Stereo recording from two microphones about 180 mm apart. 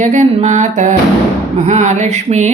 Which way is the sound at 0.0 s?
40° right (ahead or behind).